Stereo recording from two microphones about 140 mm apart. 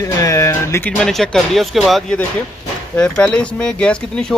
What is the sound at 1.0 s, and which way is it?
Speech, 5° left (ahead or behind).